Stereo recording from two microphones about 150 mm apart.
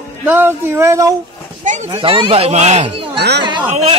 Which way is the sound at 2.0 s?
35° right (ahead or behind).